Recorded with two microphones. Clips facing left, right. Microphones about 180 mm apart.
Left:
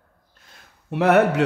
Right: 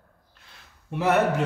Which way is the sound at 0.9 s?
70° left (ahead or behind).